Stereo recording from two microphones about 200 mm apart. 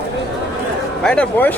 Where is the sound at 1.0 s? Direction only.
5° left (ahead or behind).